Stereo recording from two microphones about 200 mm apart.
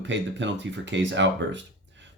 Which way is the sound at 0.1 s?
65° right (ahead or behind).